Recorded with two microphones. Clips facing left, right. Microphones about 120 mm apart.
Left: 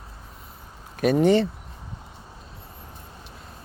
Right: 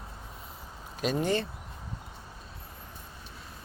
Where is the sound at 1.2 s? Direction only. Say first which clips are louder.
Left 11 dB; 75° left (ahead or behind).